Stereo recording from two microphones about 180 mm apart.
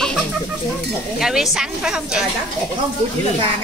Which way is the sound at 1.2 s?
Centre (ahead or behind).